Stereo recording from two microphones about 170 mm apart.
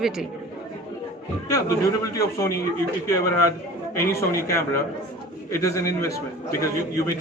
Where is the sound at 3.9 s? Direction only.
15° left (ahead or behind).